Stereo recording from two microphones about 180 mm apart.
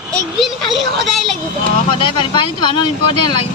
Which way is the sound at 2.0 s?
25° left (ahead or behind).